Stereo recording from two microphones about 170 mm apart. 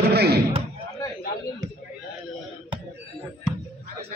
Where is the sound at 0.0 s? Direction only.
70° right (ahead or behind).